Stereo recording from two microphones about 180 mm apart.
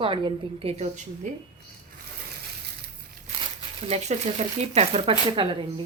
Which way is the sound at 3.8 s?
35° right (ahead or behind).